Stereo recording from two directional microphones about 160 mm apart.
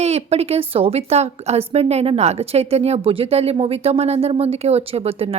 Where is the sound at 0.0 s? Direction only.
40° right (ahead or behind).